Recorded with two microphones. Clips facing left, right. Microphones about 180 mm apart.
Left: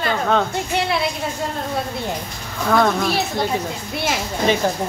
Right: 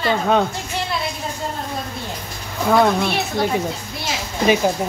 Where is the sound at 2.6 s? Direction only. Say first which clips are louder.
Right 2 dB; 10° right (ahead or behind).